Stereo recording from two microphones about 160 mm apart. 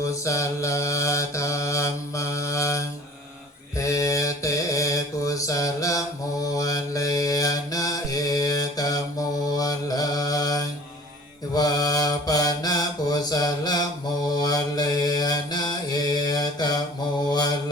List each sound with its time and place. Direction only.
0.0 s mantra: 20° left (ahead or behind)